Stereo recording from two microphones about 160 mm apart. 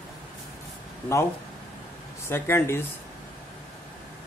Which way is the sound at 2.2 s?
15° left (ahead or behind).